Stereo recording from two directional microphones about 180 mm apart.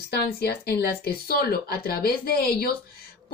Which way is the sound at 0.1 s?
60° left (ahead or behind).